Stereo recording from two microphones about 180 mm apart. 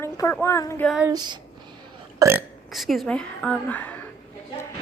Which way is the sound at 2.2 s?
15° right (ahead or behind).